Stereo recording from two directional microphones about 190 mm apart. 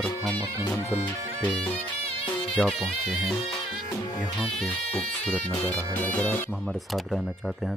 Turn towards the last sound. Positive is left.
turn(degrees=10)  # may be behind; listen again after turning